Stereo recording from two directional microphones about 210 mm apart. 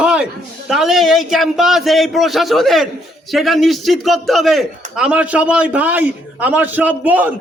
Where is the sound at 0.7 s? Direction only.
Centre (ahead or behind).